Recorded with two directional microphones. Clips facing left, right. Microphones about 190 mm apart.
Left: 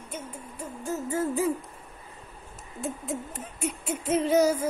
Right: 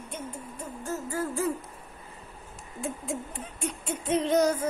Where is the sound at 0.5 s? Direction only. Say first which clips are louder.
Left 3 dB; 15° left (ahead or behind).